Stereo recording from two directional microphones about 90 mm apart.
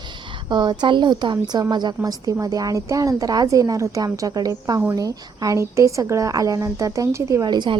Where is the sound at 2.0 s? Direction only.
45° right (ahead or behind).